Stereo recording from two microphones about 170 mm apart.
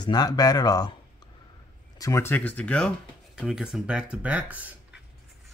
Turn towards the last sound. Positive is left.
turn(degrees=-10)  # may be behind; listen again after turning